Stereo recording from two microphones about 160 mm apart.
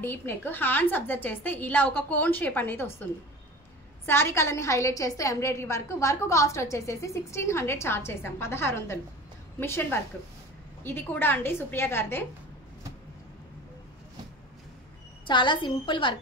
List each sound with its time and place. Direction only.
0.0 s a woman's voice: 15° left (ahead or behind)
4.0 s a woman's voice: 15° left (ahead or behind)
15.2 s a woman's voice: 30° left (ahead or behind)